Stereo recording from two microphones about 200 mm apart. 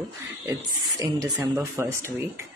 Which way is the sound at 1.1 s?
20° right (ahead or behind).